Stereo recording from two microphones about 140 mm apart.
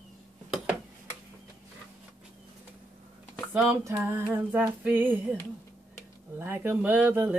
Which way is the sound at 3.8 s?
15° right (ahead or behind).